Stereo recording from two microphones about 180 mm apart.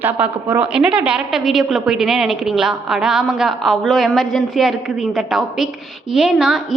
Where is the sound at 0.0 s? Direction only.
10° right (ahead or behind).